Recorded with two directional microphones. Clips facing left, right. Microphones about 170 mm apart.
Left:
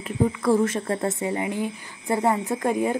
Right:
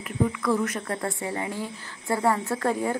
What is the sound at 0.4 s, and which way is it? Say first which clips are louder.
A woman's voice: left 5 dB; 30° left (ahead or behind).